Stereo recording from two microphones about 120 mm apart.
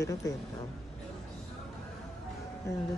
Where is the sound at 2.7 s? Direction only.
25° left (ahead or behind).